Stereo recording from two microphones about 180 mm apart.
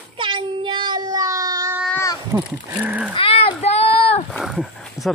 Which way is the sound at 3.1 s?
30° left (ahead or behind).